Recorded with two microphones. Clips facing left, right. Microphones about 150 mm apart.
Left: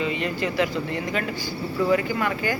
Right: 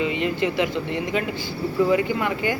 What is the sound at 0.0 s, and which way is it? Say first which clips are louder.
Speech: right 3 dB; 20° right (ahead or behind).